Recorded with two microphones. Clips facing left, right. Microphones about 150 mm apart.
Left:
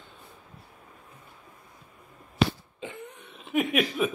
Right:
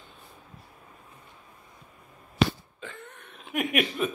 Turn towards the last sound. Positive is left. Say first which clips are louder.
# left 1 dB
turn(degrees=0)  # may be behind; listen again after turning